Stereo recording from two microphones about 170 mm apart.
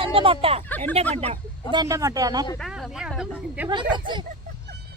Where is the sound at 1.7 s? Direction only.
20° right (ahead or behind).